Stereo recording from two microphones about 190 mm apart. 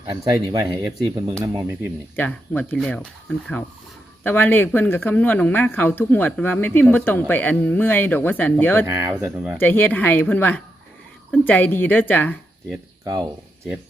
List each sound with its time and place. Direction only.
0.0 s speech: 20° right (ahead or behind)
2.1 s speech: 10° left (ahead or behind)
8.9 s speech: 10° right (ahead or behind)
9.6 s speech: 10° left (ahead or behind)